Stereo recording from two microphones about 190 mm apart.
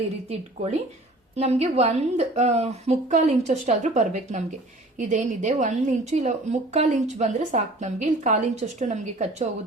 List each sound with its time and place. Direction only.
0.3 s a woman's voice: 35° right (ahead or behind)